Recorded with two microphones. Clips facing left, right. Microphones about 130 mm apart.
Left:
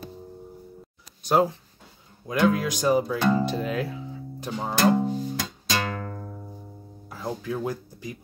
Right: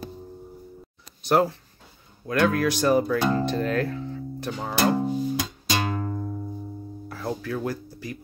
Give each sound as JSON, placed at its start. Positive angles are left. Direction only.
{"t": 1.3, "sound": "speech", "side_deg": 15}
{"t": 4.7, "sound": "music", "side_deg": -10}
{"t": 7.1, "sound": "speech", "side_deg": 15}